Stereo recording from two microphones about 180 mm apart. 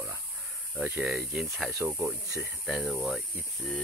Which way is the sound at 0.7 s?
5° right (ahead or behind).